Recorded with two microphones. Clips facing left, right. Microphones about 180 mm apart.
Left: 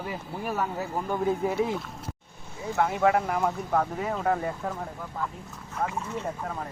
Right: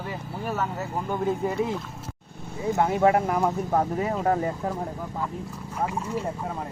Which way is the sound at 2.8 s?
35° right (ahead or behind).